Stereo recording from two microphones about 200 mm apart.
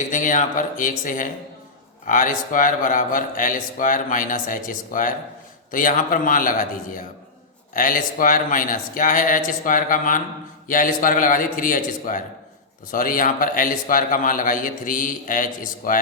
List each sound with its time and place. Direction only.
0.0 s a man's voice: 40° left (ahead or behind)